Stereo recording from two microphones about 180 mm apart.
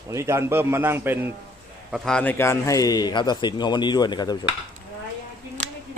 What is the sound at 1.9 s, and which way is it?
A man's voice, 5° left (ahead or behind).